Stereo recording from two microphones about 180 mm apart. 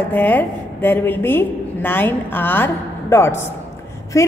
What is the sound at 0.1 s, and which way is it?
A woman's voice, 10° left (ahead or behind).